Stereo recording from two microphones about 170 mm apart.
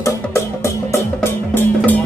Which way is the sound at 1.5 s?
10° left (ahead or behind).